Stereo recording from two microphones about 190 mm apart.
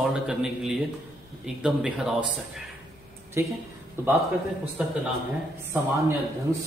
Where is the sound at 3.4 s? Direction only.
15° right (ahead or behind).